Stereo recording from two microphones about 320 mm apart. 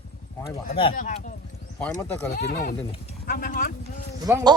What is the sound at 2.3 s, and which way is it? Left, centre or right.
Speech, left.